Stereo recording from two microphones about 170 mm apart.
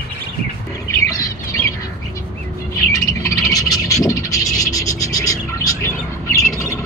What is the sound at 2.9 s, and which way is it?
Vehicle, 20° left (ahead or behind).